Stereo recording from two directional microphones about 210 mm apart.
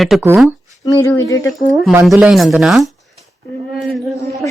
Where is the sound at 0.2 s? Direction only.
10° right (ahead or behind).